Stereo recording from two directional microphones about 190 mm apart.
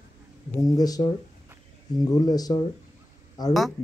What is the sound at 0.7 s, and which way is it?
A man's voice, 20° left (ahead or behind).